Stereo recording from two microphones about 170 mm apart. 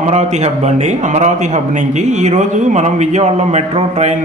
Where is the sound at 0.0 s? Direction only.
40° right (ahead or behind).